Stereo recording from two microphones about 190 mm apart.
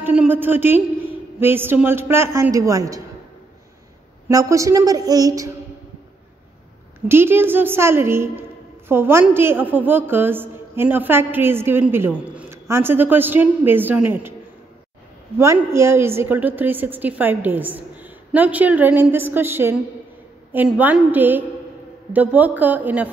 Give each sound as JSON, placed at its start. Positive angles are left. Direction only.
{"t": 0.0, "sound": "a woman's voice", "side_deg": -10}
{"t": 4.3, "sound": "a woman's voice", "side_deg": -15}
{"t": 7.1, "sound": "a woman's voice", "side_deg": -10}
{"t": 15.3, "sound": "a woman's voice", "side_deg": -15}